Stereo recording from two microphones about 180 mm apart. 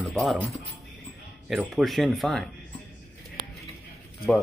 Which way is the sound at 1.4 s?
Centre (ahead or behind).